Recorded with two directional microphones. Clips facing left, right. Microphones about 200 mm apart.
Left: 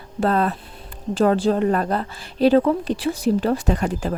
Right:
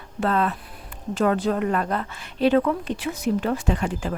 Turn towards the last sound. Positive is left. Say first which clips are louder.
# left 3 dB
turn(degrees=40)  # may be behind; listen again after turning